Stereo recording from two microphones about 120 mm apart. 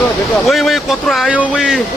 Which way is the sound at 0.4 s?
Centre (ahead or behind).